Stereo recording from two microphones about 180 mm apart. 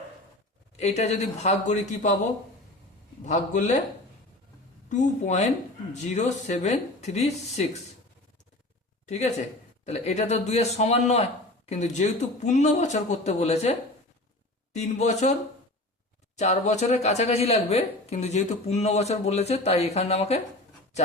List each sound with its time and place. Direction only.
0.8 s speech: 40° left (ahead or behind)
3.2 s speech: 45° left (ahead or behind)
4.9 s speech: 40° left (ahead or behind)
9.0 s speech: 40° left (ahead or behind)
16.4 s speech: 40° left (ahead or behind)